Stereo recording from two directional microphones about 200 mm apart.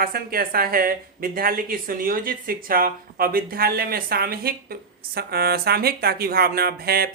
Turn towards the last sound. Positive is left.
turn(degrees=-50)  # may be behind; listen again after turning